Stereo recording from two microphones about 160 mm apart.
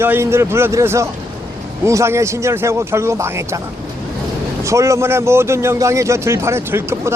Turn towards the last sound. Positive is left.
turn(degrees=-15)  # may be behind; listen again after turning